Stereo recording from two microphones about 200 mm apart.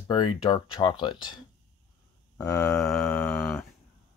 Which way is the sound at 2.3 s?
10° left (ahead or behind).